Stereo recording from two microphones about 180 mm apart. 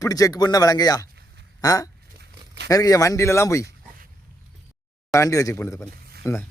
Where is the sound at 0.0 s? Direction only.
20° left (ahead or behind).